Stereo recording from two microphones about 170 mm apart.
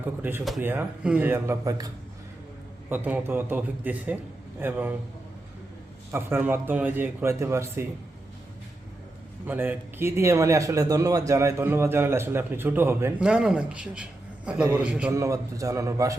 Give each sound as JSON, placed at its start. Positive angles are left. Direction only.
{"t": 0.0, "sound": "a man's voice", "side_deg": -10}
{"t": 2.9, "sound": "a man's voice", "side_deg": -10}
{"t": 6.1, "sound": "a man's voice", "side_deg": -15}
{"t": 9.5, "sound": "a man's voice", "side_deg": -10}
{"t": 15.1, "sound": "a man's voice", "side_deg": -20}